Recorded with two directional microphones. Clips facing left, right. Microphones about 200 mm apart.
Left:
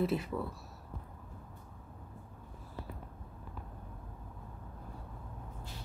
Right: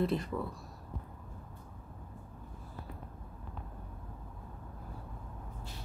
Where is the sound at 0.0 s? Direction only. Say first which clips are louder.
Even; 5° left (ahead or behind).